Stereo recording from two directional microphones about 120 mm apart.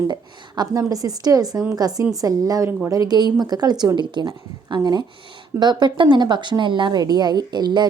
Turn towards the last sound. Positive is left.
turn(degrees=-35)  # may be behind; listen again after turning